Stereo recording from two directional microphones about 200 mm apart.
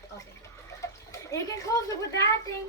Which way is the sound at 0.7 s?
15° left (ahead or behind).